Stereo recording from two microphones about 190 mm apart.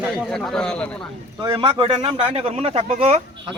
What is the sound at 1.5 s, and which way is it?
Speech, 25° right (ahead or behind).